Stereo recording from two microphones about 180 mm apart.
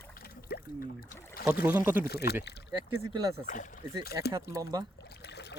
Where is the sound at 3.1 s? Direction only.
20° right (ahead or behind).